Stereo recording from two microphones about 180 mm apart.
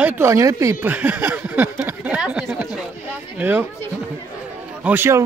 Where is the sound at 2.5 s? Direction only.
10° right (ahead or behind).